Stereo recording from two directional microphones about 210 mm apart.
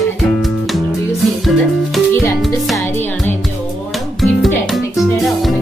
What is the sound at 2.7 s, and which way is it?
Music, 10° left (ahead or behind).